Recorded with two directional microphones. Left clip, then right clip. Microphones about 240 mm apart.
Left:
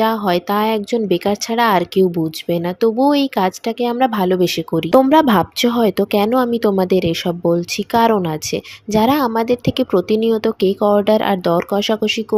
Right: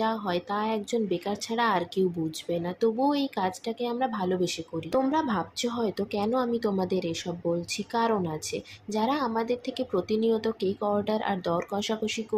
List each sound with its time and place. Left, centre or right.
0.0 s speech: left